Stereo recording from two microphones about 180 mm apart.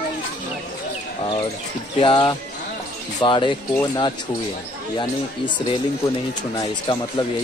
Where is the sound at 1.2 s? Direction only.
25° left (ahead or behind).